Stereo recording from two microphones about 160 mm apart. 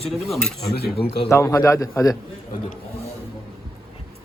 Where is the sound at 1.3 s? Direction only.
20° left (ahead or behind).